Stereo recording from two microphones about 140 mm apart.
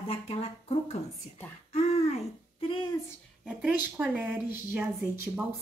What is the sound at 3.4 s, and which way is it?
Speech, 10° right (ahead or behind).